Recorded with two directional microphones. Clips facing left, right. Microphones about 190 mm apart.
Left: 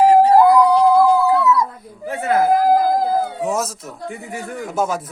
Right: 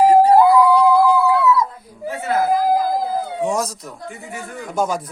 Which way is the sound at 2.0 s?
55° left (ahead or behind).